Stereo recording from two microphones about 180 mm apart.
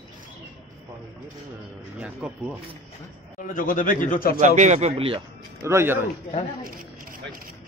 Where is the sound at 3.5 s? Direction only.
50° left (ahead or behind).